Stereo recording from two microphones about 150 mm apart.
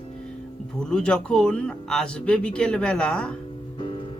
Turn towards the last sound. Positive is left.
turn(degrees=5)  # may be behind; listen again after turning